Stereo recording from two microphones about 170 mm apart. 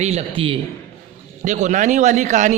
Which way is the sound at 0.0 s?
40° right (ahead or behind).